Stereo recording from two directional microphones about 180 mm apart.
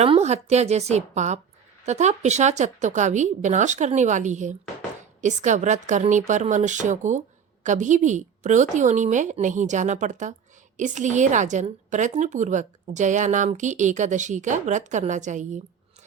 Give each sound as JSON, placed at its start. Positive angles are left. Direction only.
{"t": 0.0, "sound": "a woman's voice", "side_deg": -35}